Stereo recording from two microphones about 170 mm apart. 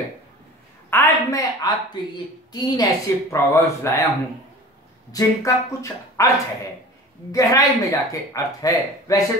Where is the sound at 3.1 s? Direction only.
20° left (ahead or behind).